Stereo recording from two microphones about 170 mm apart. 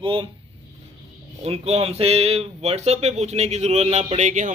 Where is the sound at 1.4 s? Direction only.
40° right (ahead or behind).